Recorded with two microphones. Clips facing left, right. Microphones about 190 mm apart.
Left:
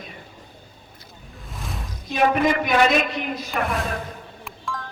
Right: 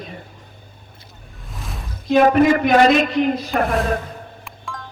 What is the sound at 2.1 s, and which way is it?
A man's voice, 50° right (ahead or behind).